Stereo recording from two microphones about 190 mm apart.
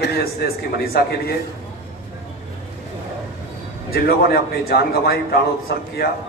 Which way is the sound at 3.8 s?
50° left (ahead or behind).